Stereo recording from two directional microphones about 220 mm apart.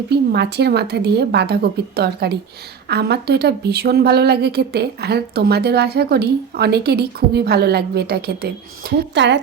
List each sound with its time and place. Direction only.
0.1 s speech: 50° right (ahead or behind)